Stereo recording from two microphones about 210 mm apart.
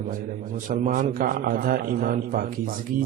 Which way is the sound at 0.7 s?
40° right (ahead or behind).